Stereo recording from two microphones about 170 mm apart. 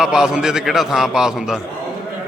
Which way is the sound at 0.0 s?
5° right (ahead or behind).